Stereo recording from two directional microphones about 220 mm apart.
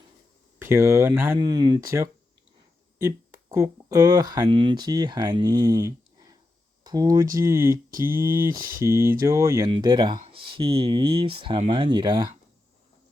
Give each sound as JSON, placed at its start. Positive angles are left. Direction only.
{"t": 0.6, "sound": "speech", "side_deg": -10}